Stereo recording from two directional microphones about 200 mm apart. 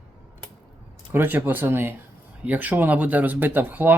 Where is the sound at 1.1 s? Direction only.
10° right (ahead or behind).